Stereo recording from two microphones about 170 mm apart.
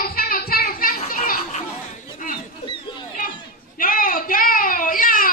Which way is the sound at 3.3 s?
55° left (ahead or behind).